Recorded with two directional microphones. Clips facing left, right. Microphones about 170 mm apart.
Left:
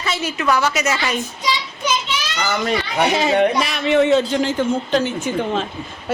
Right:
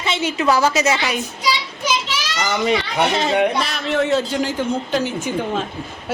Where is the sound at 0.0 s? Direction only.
25° right (ahead or behind).